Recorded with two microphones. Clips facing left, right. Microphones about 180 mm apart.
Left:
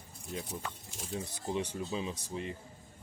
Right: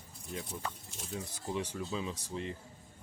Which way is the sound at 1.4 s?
20° left (ahead or behind).